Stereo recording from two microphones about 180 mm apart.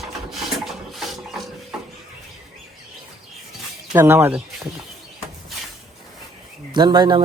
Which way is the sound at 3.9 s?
15° right (ahead or behind).